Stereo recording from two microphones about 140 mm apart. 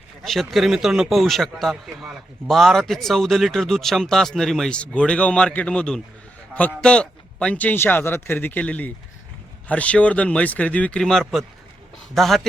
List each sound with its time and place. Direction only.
0.3 s a man's voice: centre (ahead or behind)